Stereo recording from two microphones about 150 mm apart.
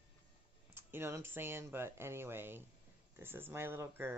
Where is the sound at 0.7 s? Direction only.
15° right (ahead or behind).